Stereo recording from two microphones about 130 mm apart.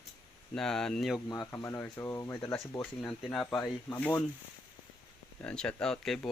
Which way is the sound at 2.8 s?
10° left (ahead or behind).